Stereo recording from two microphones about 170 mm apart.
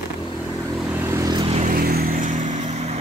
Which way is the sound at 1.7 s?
60° right (ahead or behind).